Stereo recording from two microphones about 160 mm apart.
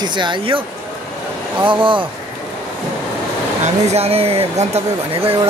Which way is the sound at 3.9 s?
40° right (ahead or behind).